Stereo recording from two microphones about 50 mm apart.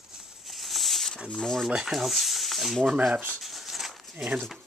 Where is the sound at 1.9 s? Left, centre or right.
Centre.